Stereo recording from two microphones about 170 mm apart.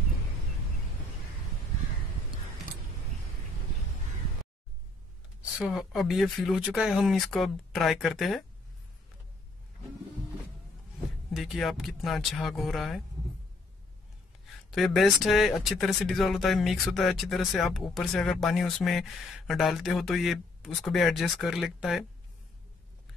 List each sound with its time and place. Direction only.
5.6 s speech: centre (ahead or behind)
11.3 s speech: centre (ahead or behind)
14.7 s speech: centre (ahead or behind)